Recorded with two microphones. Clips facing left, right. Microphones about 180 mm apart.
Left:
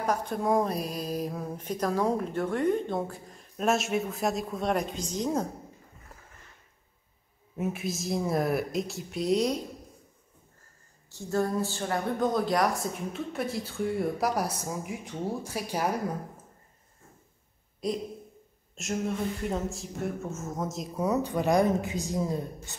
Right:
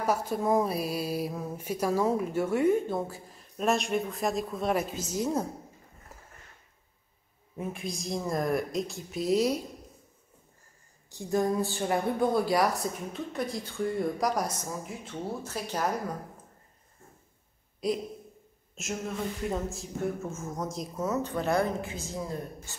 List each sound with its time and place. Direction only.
0.0 s speech: 5° right (ahead or behind)
7.5 s speech: 5° left (ahead or behind)
11.1 s speech: 15° right (ahead or behind); by 16.0 s 10° left (ahead or behind)
17.8 s speech: centre (ahead or behind)
20.9 s a woman's voice: 15° left (ahead or behind)